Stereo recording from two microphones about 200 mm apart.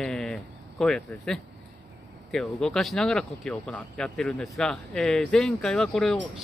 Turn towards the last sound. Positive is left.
turn(degrees=5)  # may be behind; listen again after turning